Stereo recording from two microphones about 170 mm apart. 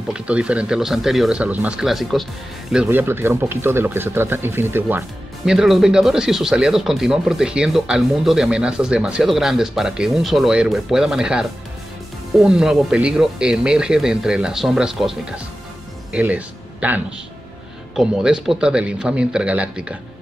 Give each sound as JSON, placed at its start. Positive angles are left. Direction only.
{"t": 0.1, "sound": "speech", "side_deg": -5}
{"t": 12.4, "sound": "speech", "side_deg": -5}